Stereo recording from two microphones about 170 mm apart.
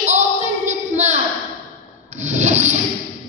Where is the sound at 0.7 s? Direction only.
45° right (ahead or behind).